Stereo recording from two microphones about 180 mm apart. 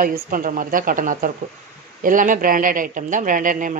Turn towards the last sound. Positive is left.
turn(degrees=-50)  # may be behind; listen again after turning